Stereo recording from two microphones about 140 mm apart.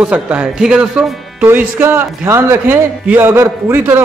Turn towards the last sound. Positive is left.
turn(degrees=-15)  # may be behind; listen again after turning